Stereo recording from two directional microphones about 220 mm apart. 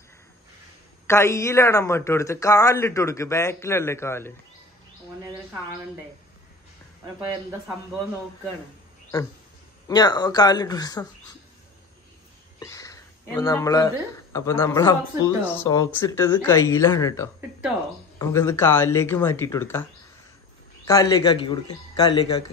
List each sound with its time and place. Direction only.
1.0 s speech: 10° left (ahead or behind)
9.8 s speech: 15° left (ahead or behind)
12.5 s speech: 15° left (ahead or behind)
20.8 s speech: 15° left (ahead or behind)